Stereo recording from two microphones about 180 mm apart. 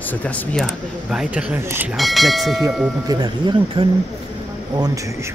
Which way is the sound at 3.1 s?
25° right (ahead or behind).